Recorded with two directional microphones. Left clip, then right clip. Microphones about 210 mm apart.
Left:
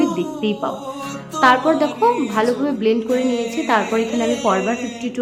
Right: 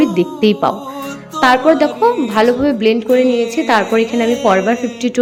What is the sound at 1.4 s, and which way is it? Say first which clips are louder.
A woman's voice: right 4 dB; 15° right (ahead or behind).